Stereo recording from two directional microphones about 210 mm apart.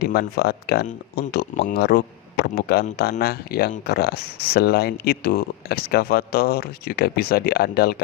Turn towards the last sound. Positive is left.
turn(degrees=50)  # may be behind; listen again after turning